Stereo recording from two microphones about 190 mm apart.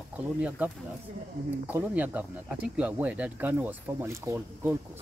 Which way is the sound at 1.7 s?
10° right (ahead or behind).